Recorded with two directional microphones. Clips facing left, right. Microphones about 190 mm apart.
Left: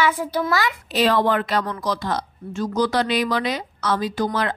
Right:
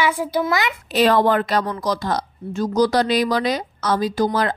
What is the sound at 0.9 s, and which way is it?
A woman's voice, 50° right (ahead or behind).